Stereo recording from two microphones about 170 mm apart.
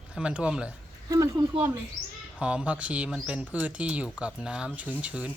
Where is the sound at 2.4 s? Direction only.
5° right (ahead or behind).